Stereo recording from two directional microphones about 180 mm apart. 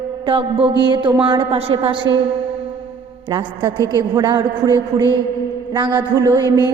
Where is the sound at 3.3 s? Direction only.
25° right (ahead or behind).